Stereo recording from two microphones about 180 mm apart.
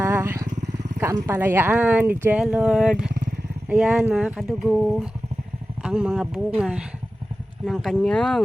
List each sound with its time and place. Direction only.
0.0 s motorcycle: 15° right (ahead or behind)
0.9 s speech: 15° right (ahead or behind); by 8.4 s centre (ahead or behind)